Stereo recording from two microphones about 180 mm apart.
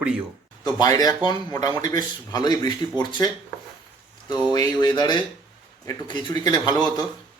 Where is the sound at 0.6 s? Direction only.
20° left (ahead or behind).